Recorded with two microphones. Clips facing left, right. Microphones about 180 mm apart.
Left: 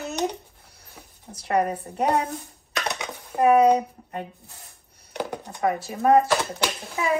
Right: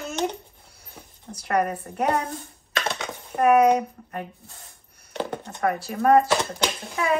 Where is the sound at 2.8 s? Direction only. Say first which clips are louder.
Right 1 dB; 15° left (ahead or behind).